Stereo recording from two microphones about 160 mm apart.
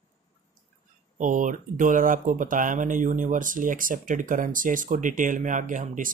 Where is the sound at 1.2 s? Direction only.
55° right (ahead or behind).